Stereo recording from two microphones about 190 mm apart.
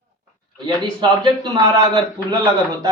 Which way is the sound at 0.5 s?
25° right (ahead or behind).